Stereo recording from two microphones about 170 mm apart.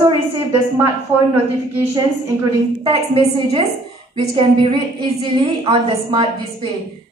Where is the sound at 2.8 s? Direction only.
30° right (ahead or behind).